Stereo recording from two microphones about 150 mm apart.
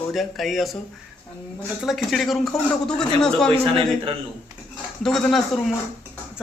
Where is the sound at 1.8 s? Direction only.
Centre (ahead or behind).